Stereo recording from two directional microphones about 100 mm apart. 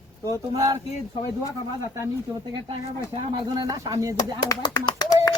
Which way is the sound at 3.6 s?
40° right (ahead or behind).